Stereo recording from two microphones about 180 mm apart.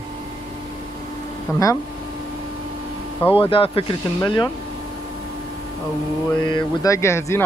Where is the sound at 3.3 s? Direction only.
30° left (ahead or behind).